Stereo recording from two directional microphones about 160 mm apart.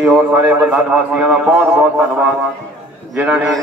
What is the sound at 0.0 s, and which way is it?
A man's voice, 10° right (ahead or behind).